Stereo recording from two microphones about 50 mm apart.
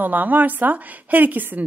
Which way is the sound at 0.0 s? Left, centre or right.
Right.